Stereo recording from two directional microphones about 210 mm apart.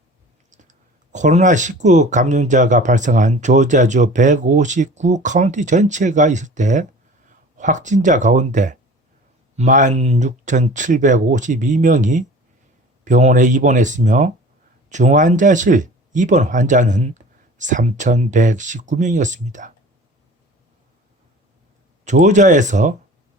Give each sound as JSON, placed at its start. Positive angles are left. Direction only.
{"t": 0.5, "sound": "speech", "side_deg": -35}
{"t": 22.0, "sound": "speech", "side_deg": -35}